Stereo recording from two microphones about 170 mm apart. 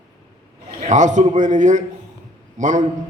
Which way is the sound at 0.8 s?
45° right (ahead or behind).